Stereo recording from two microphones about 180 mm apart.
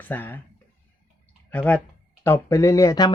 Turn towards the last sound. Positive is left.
turn(degrees=20)  # may be behind; listen again after turning